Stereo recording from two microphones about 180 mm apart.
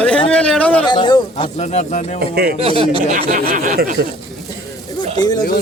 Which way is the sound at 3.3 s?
55° right (ahead or behind).